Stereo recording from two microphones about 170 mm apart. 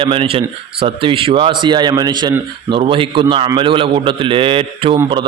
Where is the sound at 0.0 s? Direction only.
30° right (ahead or behind).